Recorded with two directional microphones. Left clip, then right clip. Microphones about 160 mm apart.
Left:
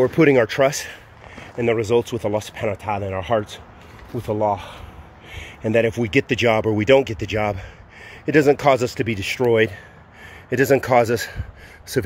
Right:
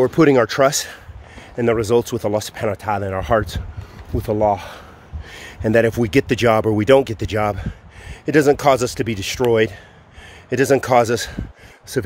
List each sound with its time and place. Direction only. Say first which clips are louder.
0.0 s speech: right 1 dB; 20° right (ahead or behind)